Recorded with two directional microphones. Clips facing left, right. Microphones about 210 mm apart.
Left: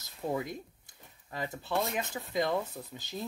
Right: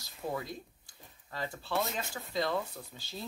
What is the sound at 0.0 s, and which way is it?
Speech, 20° left (ahead or behind).